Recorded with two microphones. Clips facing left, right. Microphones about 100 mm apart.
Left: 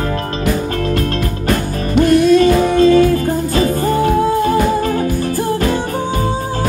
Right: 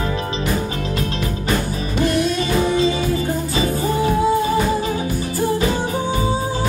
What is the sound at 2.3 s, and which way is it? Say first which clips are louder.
Music: left 7 dB; 55° left (ahead or behind).